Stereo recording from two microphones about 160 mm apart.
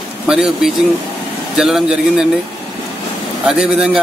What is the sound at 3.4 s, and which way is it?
Speech, 5° right (ahead or behind).